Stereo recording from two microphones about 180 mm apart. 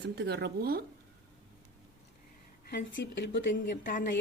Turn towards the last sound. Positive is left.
turn(degrees=65)  # may be behind; listen again after turning